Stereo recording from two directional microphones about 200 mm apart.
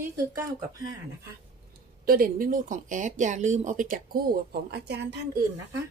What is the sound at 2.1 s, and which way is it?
Speech, 45° right (ahead or behind).